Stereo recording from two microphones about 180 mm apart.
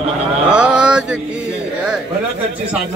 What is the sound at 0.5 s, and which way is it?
Mantra, 5° right (ahead or behind).